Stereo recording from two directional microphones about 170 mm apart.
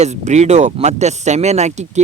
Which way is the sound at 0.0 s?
40° right (ahead or behind).